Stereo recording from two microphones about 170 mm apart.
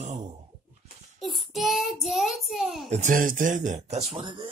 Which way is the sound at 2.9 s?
50° right (ahead or behind).